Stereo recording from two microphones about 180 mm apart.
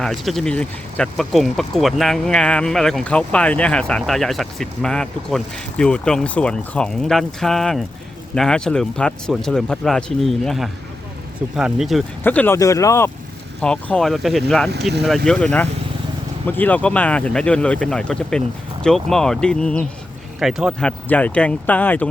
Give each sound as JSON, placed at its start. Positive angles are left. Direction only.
{"t": 0.0, "sound": "speech", "side_deg": 0}
{"t": 12.2, "sound": "speech", "side_deg": 10}
{"t": 13.6, "sound": "speech", "side_deg": 5}